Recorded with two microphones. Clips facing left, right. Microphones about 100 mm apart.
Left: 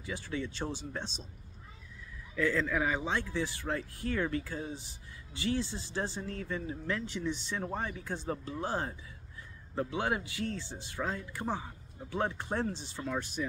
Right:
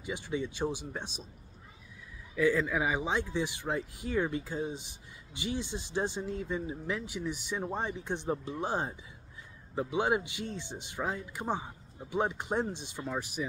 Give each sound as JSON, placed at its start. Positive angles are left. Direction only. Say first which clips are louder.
{"t": 0.0, "sound": "speech", "louder": "right 2 dB", "side_deg": -20}
{"t": 2.3, "sound": "speech", "louder": "right 3 dB", "side_deg": -10}